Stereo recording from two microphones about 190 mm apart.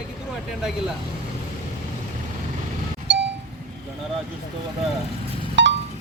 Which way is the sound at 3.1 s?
70° right (ahead or behind).